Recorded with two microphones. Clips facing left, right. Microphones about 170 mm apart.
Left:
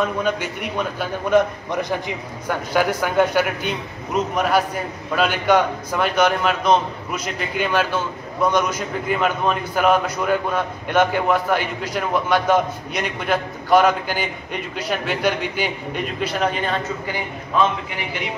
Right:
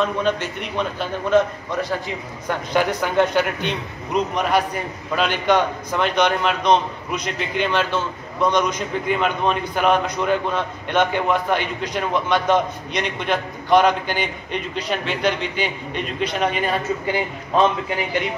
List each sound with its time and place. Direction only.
0.0 s a man's voice: 10° left (ahead or behind)
2.7 s a man's voice: 5° left (ahead or behind)